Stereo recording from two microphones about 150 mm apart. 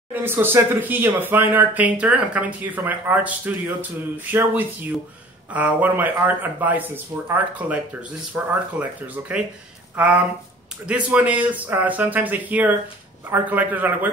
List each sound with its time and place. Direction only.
0.1 s speech: 15° right (ahead or behind)